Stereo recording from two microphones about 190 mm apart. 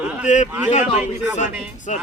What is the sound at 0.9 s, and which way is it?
Speech, 10° right (ahead or behind).